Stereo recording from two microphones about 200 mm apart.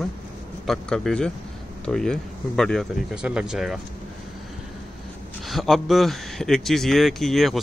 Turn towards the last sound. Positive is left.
turn(degrees=0)  # may be behind; listen again after turning